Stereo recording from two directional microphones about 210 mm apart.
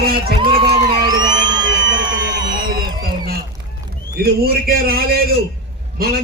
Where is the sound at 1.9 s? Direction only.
60° right (ahead or behind).